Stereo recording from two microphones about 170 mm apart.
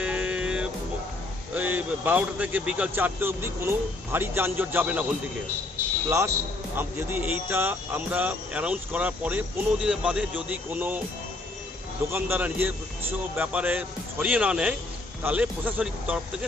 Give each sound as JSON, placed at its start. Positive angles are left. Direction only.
{"t": 0.0, "sound": "music", "side_deg": -5}
{"t": 1.5, "sound": "speech", "side_deg": -10}
{"t": 6.1, "sound": "speech", "side_deg": -15}
{"t": 12.1, "sound": "speech", "side_deg": -10}